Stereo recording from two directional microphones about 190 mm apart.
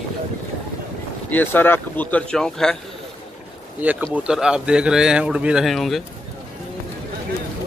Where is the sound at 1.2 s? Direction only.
10° left (ahead or behind).